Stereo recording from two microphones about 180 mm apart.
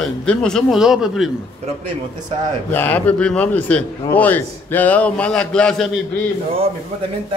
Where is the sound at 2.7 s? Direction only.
10° left (ahead or behind).